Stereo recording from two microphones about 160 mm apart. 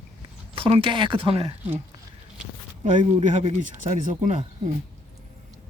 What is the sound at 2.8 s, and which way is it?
A man's voice, 50° right (ahead or behind).